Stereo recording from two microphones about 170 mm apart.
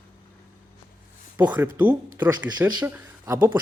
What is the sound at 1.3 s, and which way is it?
A man's voice, 10° right (ahead or behind).